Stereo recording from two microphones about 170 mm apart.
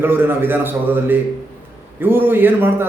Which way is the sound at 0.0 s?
10° right (ahead or behind).